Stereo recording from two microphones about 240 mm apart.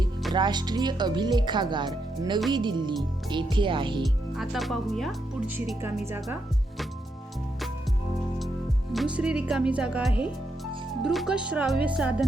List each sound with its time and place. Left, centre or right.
0.3 s speech: centre
4.0 s speech: centre
8.9 s speech: centre